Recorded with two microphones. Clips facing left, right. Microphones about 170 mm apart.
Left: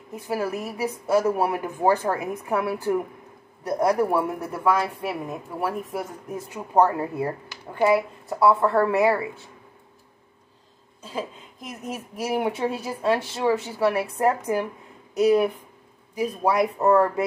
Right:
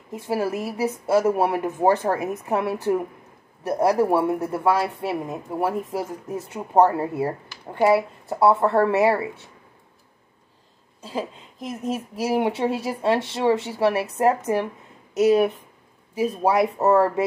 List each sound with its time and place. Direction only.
0.1 s a woman's voice: 25° right (ahead or behind)
11.0 s a woman's voice: 30° right (ahead or behind)